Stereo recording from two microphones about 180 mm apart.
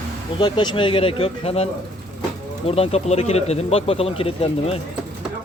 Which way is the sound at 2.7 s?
35° left (ahead or behind).